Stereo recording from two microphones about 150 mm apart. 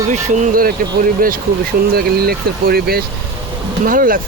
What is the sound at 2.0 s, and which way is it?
Speech, 90° right.